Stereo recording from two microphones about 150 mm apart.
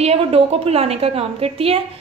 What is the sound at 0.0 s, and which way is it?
A woman's voice, 45° right (ahead or behind).